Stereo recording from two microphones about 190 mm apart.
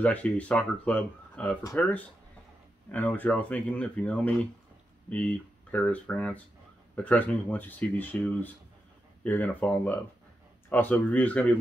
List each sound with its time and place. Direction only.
0.0 s speech: 5° left (ahead or behind)